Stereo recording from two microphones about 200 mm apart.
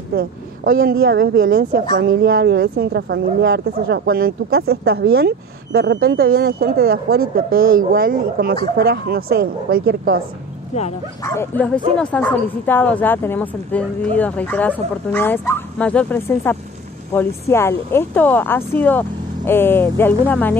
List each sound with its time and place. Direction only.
0.1 s a woman's voice: 50° right (ahead or behind)
11.2 s speech: 10° left (ahead or behind)